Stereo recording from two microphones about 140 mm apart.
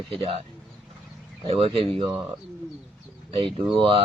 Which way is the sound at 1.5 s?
45° right (ahead or behind).